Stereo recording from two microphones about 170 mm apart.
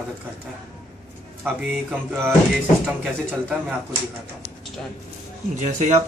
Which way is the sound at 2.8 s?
5° right (ahead or behind).